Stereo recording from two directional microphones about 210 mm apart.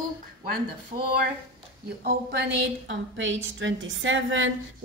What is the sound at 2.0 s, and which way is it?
A woman's voice, 50° right (ahead or behind).